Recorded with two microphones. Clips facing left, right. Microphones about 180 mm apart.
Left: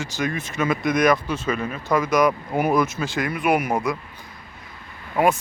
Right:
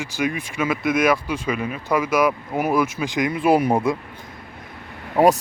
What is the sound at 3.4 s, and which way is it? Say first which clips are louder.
Speech: right 4 dB; 30° right (ahead or behind).